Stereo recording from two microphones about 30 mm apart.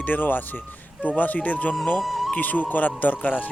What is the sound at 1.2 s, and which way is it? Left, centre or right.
Speech, left.